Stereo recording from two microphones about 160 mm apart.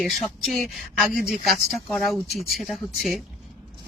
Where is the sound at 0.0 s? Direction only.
Centre (ahead or behind).